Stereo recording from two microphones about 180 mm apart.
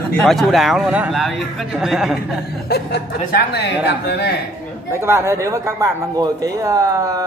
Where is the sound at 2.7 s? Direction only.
60° left (ahead or behind).